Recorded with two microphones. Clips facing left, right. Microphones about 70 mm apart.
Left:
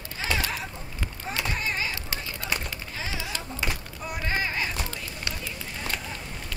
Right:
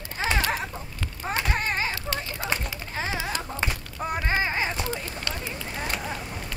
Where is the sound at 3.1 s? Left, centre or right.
Right.